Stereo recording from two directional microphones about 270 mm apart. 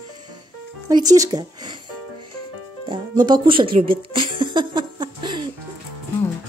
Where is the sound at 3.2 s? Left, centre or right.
Centre.